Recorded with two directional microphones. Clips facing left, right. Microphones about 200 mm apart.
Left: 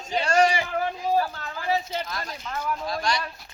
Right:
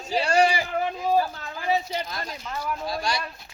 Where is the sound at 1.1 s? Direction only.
20° right (ahead or behind).